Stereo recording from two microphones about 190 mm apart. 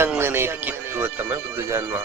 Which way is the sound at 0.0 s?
10° right (ahead or behind).